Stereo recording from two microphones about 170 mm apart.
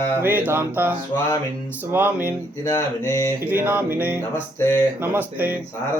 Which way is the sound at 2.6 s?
20° left (ahead or behind).